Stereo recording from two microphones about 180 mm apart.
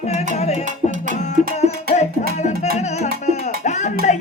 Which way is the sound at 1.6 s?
35° left (ahead or behind).